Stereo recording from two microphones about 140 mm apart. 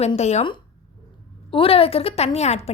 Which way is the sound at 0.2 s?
50° left (ahead or behind).